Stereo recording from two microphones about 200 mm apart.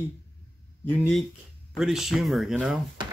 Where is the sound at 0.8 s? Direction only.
Centre (ahead or behind).